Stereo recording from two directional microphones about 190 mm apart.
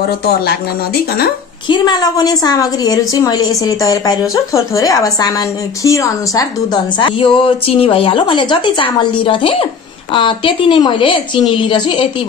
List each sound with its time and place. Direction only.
1.7 s a woman's voice: 20° left (ahead or behind)